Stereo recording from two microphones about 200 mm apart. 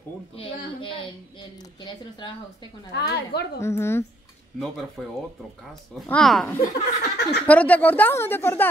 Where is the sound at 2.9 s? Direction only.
55° left (ahead or behind).